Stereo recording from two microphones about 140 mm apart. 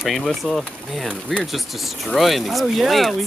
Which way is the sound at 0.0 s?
Centre (ahead or behind).